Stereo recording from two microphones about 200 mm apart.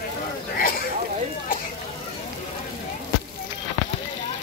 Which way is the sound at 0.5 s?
45° left (ahead or behind).